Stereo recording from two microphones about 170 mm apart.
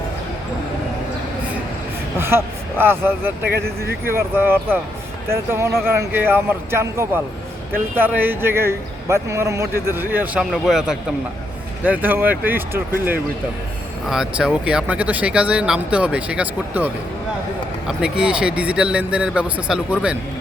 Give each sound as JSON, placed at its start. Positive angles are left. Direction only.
{"t": 2.1, "sound": "speech", "side_deg": -15}
{"t": 3.4, "sound": "speech", "side_deg": -65}
{"t": 4.0, "sound": "speech", "side_deg": -15}